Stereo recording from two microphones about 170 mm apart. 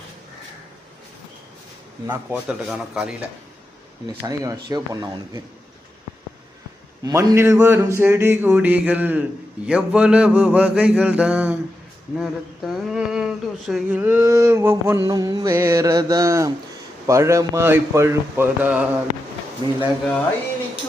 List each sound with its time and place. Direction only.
2.0 s a man's voice: 10° right (ahead or behind)
4.2 s speech: 20° right (ahead or behind)
7.0 s speech: 20° right (ahead or behind)
19.6 s speech: 25° right (ahead or behind)